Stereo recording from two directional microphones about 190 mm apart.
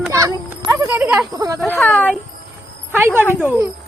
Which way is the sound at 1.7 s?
10° left (ahead or behind).